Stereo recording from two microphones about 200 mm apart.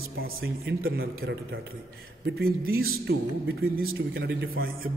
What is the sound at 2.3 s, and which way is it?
A man's voice, 50° right (ahead or behind).